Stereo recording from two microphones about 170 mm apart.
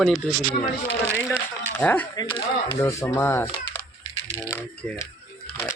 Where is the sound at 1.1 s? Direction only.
10° left (ahead or behind).